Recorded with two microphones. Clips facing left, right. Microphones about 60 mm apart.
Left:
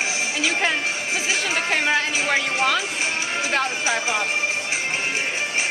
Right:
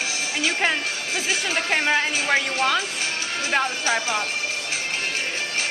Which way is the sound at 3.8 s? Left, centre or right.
Centre.